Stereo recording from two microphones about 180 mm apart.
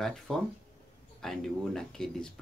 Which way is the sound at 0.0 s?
Centre (ahead or behind).